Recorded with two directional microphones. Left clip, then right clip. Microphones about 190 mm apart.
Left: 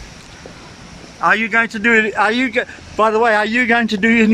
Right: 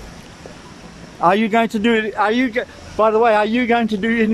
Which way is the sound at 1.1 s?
20° right (ahead or behind).